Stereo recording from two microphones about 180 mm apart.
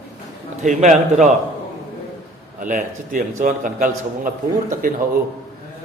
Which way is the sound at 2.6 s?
45° right (ahead or behind).